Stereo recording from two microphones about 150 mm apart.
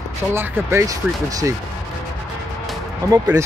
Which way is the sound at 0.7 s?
20° right (ahead or behind).